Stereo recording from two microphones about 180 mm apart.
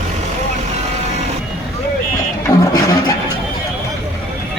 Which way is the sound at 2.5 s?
20° left (ahead or behind).